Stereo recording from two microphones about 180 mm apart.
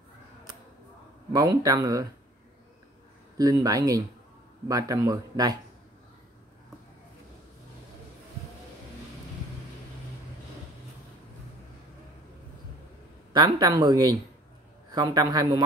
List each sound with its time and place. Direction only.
1.3 s speech: 20° right (ahead or behind)
3.3 s speech: 20° right (ahead or behind)
13.3 s speech: 25° right (ahead or behind)